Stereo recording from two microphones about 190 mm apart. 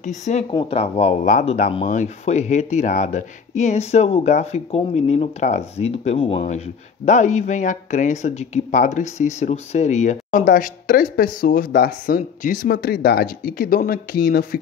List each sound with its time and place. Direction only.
0.0 s speech: 40° left (ahead or behind)
0.5 s speech: 30° left (ahead or behind); by 14.6 s 50° left (ahead or behind)